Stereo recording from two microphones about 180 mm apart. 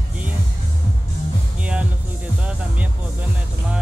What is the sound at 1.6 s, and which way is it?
Music, 5° right (ahead or behind).